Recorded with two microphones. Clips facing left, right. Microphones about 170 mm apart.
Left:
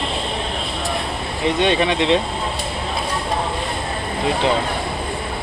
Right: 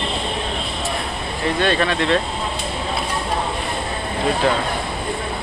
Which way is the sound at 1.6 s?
20° left (ahead or behind).